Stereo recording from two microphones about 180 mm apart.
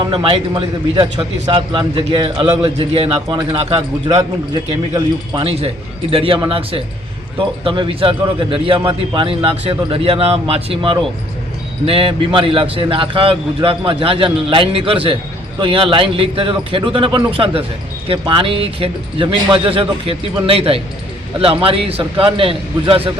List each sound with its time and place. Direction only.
0.0 s a man's voice: 30° right (ahead or behind)